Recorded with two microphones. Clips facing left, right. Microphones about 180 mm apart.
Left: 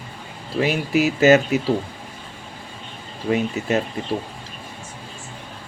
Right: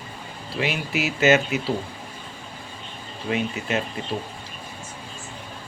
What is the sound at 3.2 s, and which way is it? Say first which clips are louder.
Speech: left 5 dB; 35° left (ahead or behind).